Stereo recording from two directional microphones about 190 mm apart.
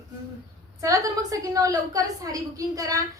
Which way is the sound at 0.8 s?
20° right (ahead or behind).